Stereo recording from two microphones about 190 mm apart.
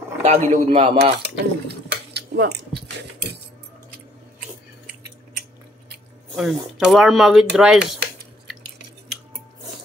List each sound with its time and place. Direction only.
0.2 s a man's voice: 40° right (ahead or behind)
0.7 s cutlery: 30° right (ahead or behind)
1.1 s dishes: 60° right (ahead or behind)
6.3 s speech: 5° right (ahead or behind)